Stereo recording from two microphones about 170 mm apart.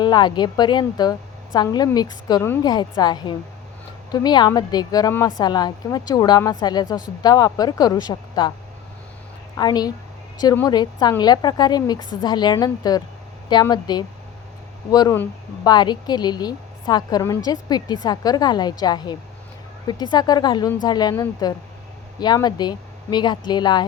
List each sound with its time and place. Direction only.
0.0 s a woman's voice: 25° left (ahead or behind)
9.6 s a woman's voice: 25° left (ahead or behind)